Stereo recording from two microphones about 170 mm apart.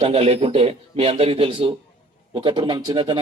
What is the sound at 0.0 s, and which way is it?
A man's voice, 35° right (ahead or behind).